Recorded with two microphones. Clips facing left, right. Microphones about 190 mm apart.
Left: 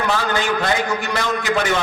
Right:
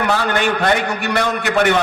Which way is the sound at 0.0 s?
65° right (ahead or behind).